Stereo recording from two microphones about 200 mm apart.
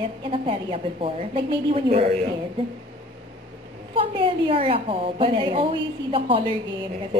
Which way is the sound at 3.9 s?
25° right (ahead or behind).